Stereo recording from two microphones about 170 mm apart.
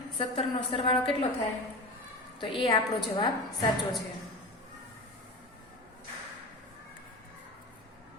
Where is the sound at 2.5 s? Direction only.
30° left (ahead or behind).